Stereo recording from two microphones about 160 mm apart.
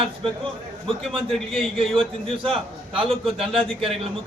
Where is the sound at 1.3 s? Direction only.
Centre (ahead or behind).